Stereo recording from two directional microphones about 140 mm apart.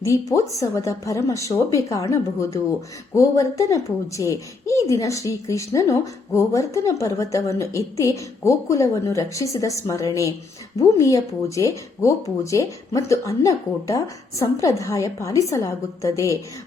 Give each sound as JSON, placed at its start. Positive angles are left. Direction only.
{"t": 0.0, "sound": "speech", "side_deg": 20}